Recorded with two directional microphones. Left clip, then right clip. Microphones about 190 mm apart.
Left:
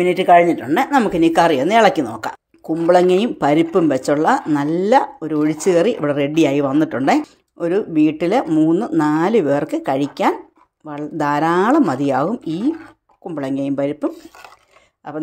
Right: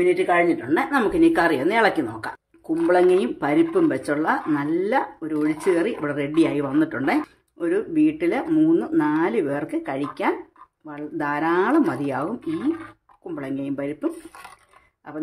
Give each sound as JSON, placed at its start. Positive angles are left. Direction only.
{"t": 0.0, "sound": "speech", "side_deg": 45}
{"t": 13.3, "sound": "speech", "side_deg": 35}